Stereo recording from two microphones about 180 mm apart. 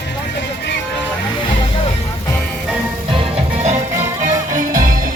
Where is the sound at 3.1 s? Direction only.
35° right (ahead or behind).